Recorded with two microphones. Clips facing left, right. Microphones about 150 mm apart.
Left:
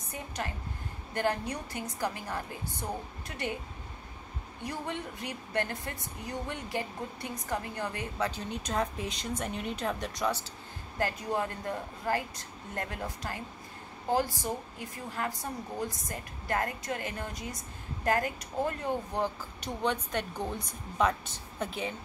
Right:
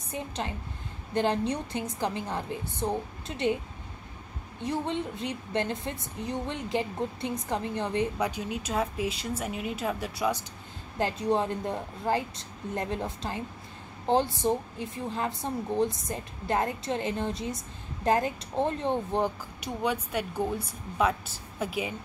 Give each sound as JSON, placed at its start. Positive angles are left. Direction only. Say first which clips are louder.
{"t": 0.4, "sound": "a woman's voice", "louder": "right 2 dB", "side_deg": -20}
{"t": 4.6, "sound": "a woman's voice", "louder": "right 6 dB", "side_deg": -25}
{"t": 11.0, "sound": "a woman's voice", "louder": "right 5 dB", "side_deg": -20}
{"t": 19.6, "sound": "speech", "louder": "right 2 dB", "side_deg": -10}